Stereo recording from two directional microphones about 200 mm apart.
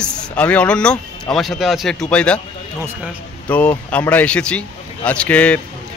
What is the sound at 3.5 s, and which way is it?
Speech, 5° left (ahead or behind).